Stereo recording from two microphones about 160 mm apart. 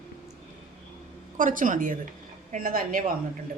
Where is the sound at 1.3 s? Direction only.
55° right (ahead or behind).